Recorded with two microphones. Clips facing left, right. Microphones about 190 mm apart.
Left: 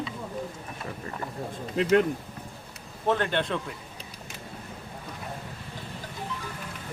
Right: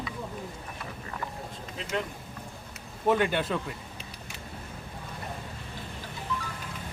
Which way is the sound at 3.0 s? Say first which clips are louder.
Right 1 dB; 10° right (ahead or behind).